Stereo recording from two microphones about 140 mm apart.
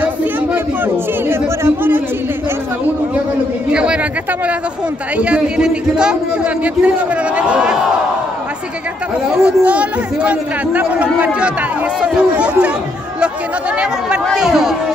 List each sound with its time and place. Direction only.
0.0 s chatter: 10° right (ahead or behind)
3.7 s chatter: 10° right (ahead or behind)
5.1 s a man's voice: 10° right (ahead or behind)
9.3 s a man's voice: 5° right (ahead or behind)
13.7 s a man's voice: 5° right (ahead or behind)